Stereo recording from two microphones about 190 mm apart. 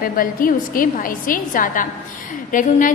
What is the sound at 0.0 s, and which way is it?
A woman's voice, 50° left (ahead or behind).